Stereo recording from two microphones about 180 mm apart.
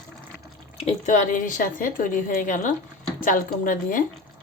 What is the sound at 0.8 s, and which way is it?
A woman's voice, 40° left (ahead or behind).